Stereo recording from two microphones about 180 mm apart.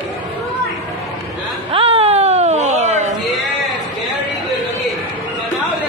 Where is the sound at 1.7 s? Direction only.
30° right (ahead or behind).